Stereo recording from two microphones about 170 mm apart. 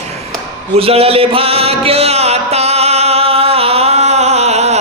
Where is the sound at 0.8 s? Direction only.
35° right (ahead or behind).